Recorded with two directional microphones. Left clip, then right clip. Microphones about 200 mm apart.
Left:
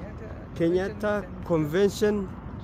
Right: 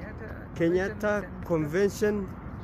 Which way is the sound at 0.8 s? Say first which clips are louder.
Even; 20° left (ahead or behind).